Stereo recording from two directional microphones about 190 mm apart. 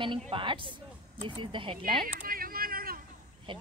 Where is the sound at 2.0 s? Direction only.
50° right (ahead or behind).